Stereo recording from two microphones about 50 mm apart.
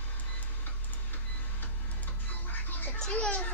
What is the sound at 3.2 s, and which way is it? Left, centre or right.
Children playing, left.